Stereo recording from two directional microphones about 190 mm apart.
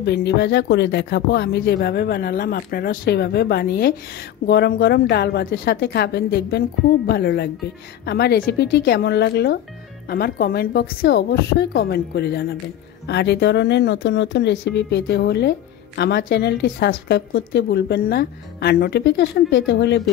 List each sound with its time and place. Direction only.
0.0 s a woman's voice: 65° left (ahead or behind)